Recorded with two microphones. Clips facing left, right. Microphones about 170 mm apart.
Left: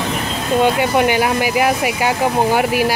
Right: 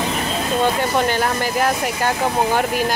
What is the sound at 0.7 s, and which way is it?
Speech, 10° left (ahead or behind).